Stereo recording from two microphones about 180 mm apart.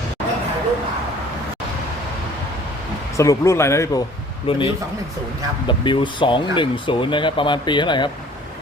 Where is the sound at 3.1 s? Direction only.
15° left (ahead or behind).